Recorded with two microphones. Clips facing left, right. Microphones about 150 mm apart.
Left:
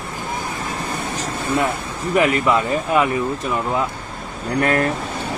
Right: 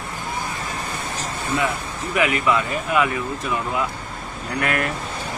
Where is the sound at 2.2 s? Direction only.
40° left (ahead or behind).